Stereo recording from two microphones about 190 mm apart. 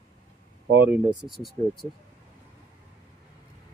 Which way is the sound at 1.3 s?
Centre (ahead or behind).